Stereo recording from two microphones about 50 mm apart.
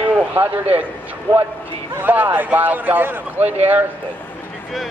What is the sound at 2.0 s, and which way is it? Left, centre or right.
A man's voice, right.